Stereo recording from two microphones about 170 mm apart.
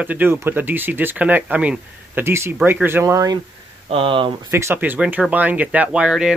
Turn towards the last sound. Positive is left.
turn(degrees=-5)  # may be behind; listen again after turning